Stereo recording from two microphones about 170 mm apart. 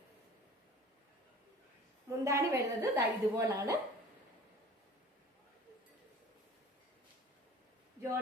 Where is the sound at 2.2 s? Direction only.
15° right (ahead or behind).